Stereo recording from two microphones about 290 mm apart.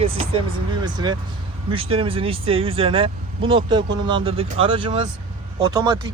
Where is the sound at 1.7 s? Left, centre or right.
Centre.